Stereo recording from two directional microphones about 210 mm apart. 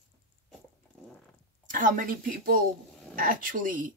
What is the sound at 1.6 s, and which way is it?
A woman's voice, 40° right (ahead or behind).